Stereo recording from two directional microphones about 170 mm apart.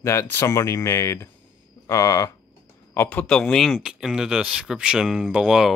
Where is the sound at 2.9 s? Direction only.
5° left (ahead or behind).